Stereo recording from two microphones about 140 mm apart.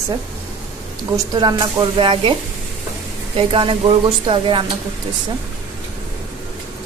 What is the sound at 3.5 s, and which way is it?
Speech, 40° right (ahead or behind).